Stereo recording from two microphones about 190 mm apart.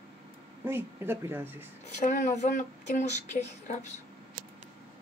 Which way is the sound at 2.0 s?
40° left (ahead or behind).